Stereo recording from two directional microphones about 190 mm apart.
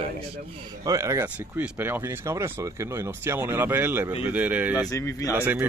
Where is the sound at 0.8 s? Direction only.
15° right (ahead or behind).